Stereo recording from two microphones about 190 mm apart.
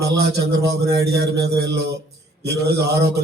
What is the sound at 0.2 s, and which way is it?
Speech, 60° right (ahead or behind).